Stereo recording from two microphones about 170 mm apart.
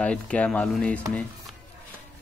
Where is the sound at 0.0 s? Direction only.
5° left (ahead or behind).